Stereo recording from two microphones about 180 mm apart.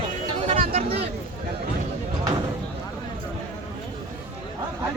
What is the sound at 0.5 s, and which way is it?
Speech, 55° right (ahead or behind).